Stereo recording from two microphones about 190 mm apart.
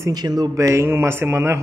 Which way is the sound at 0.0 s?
20° right (ahead or behind).